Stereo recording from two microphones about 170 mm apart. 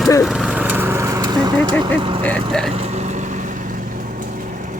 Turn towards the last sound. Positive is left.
turn(degrees=-45)  # may be behind; listen again after turning